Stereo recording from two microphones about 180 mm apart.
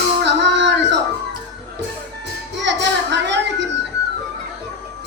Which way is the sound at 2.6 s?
75° right (ahead or behind).